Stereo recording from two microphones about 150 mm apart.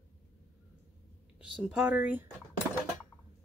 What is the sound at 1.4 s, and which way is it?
Speech, 5° right (ahead or behind).